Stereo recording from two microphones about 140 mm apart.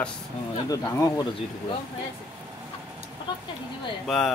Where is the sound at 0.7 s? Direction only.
25° left (ahead or behind).